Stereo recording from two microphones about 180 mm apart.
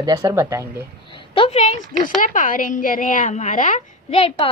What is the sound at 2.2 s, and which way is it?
A woman's voice, 50° left (ahead or behind).